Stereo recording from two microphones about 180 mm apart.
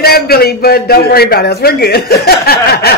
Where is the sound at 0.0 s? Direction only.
60° left (ahead or behind).